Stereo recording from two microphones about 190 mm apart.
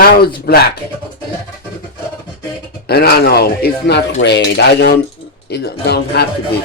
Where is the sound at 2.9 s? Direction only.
55° left (ahead or behind).